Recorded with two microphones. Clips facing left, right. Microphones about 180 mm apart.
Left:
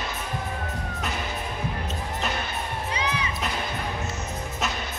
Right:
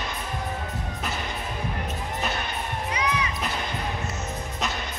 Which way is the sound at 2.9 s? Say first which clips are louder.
Right 2 dB; 30° left (ahead or behind).